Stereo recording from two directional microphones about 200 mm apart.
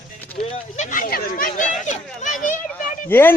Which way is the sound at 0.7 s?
45° left (ahead or behind).